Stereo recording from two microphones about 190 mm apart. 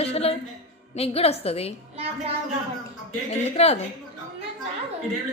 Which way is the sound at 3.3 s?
35° left (ahead or behind).